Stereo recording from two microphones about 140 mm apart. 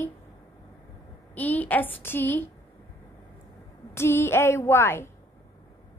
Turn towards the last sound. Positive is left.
turn(degrees=15)  # may be behind; listen again after turning